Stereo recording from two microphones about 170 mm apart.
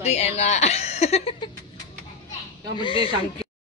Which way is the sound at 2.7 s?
30° left (ahead or behind).